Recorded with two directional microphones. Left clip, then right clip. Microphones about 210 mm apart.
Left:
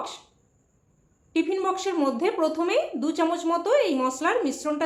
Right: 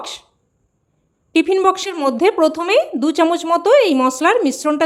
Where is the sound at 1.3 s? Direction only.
50° right (ahead or behind).